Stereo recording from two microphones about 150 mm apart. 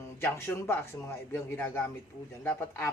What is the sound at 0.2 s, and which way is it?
Speech, 15° left (ahead or behind).